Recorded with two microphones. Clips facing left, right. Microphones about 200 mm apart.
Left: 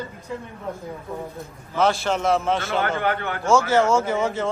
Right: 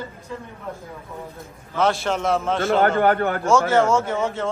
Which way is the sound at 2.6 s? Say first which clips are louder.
Right 6 dB; 50° right (ahead or behind).